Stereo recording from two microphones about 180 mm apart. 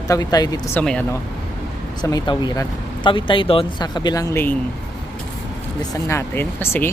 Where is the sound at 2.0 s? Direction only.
20° left (ahead or behind).